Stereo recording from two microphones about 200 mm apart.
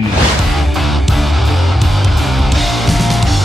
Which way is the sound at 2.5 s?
Centre (ahead or behind).